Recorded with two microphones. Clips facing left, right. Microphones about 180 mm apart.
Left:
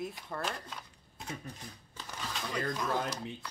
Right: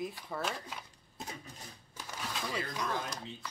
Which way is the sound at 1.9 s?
10° right (ahead or behind).